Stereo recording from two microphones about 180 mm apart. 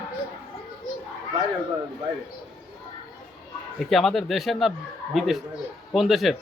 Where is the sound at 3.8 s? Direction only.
Centre (ahead or behind).